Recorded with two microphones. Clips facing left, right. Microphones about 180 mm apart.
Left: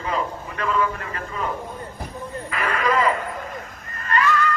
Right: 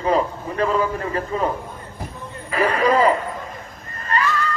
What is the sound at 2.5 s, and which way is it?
Speech, 35° right (ahead or behind).